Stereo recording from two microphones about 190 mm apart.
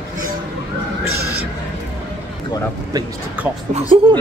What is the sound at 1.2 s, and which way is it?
Speech, 55° right (ahead or behind).